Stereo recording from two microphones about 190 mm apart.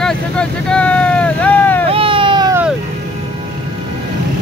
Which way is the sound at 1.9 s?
30° right (ahead or behind).